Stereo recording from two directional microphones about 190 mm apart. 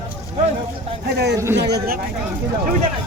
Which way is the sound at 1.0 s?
60° right (ahead or behind).